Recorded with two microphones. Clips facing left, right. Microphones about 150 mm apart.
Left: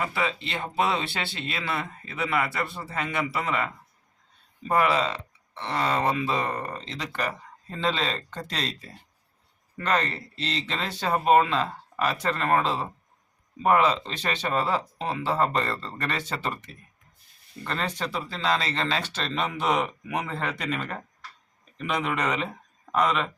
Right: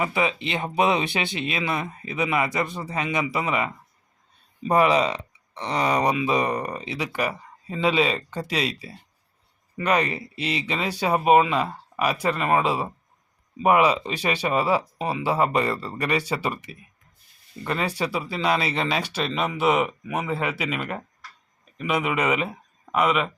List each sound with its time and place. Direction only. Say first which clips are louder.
0.0 s speech: right 4 dB; 20° right (ahead or behind)